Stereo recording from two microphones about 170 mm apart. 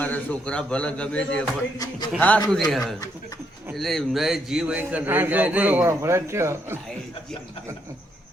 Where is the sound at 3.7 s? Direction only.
Centre (ahead or behind); by 6.8 s 15° right (ahead or behind).